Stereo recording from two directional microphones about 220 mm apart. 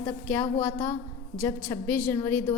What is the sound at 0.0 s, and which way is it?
A woman's voice, 5° left (ahead or behind).